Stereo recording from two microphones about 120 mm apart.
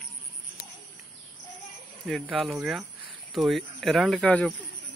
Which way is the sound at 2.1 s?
Centre (ahead or behind).